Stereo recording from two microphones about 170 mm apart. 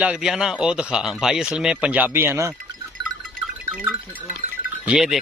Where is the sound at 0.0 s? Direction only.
5° right (ahead or behind).